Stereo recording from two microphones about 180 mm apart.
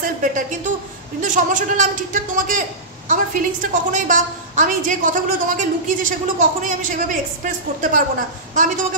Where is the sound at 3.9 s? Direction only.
45° right (ahead or behind).